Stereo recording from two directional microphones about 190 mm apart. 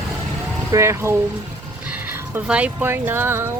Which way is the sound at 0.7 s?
15° right (ahead or behind).